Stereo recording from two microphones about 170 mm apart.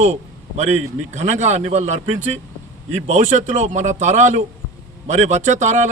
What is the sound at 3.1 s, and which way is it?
Speech, 45° right (ahead or behind).